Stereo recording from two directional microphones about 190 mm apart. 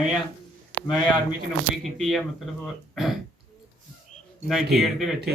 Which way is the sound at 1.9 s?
Centre (ahead or behind).